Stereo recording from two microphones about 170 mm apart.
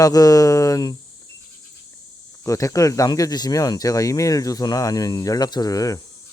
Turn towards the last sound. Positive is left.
turn(degrees=20)  # may be behind; listen again after turning